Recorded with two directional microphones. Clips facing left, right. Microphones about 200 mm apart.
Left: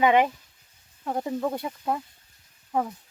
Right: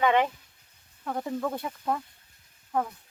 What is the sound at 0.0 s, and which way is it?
Speech, 15° left (ahead or behind).